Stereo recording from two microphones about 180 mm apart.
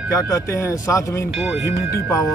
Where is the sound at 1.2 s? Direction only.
5° right (ahead or behind).